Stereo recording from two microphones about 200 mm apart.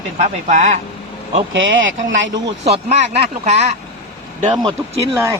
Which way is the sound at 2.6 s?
35° right (ahead or behind).